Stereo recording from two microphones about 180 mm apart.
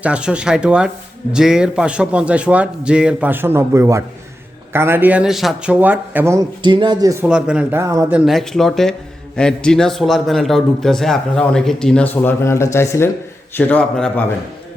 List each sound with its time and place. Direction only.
0.0 s a man's voice: 5° right (ahead or behind)
6.6 s speech: 25° right (ahead or behind)
7.3 s speech: 5° right (ahead or behind)
8.2 s a man's voice: centre (ahead or behind)